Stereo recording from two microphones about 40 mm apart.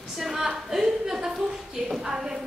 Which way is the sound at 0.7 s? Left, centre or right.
Centre.